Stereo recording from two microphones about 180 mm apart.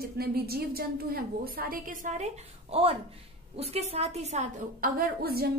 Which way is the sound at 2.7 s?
35° right (ahead or behind).